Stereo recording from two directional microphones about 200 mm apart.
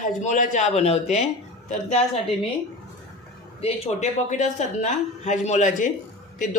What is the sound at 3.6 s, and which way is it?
Speech, 30° left (ahead or behind).